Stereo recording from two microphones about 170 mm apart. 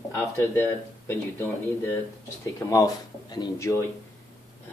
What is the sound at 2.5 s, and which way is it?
Speech, 20° left (ahead or behind).